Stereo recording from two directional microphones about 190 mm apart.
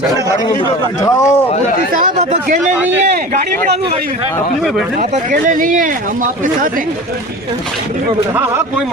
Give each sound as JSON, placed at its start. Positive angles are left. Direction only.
{"t": 1.0, "sound": "speech", "side_deg": 15}
{"t": 2.0, "sound": "a man's voice", "side_deg": -40}
{"t": 4.9, "sound": "speech", "side_deg": -45}